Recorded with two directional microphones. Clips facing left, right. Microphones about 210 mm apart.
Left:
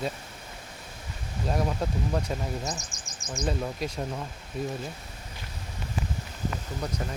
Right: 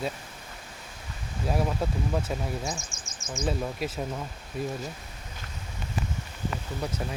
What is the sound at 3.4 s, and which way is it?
Speech, 5° right (ahead or behind).